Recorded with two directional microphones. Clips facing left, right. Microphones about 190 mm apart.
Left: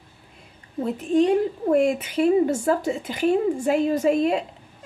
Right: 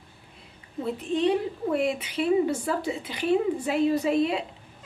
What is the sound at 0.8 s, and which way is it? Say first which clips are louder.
A woman's voice: left 5 dB; 45° left (ahead or behind).